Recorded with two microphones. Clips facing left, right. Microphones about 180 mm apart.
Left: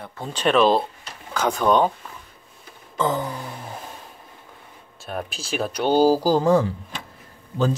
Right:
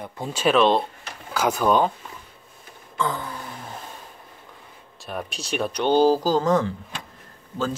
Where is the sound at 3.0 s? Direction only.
20° left (ahead or behind).